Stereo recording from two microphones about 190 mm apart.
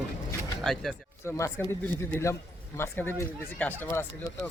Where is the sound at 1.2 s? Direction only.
15° left (ahead or behind).